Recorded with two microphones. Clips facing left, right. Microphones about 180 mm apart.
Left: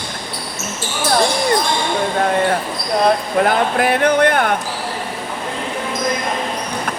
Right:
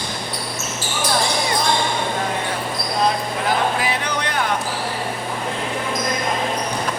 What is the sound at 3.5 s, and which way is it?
Speech, 55° left (ahead or behind).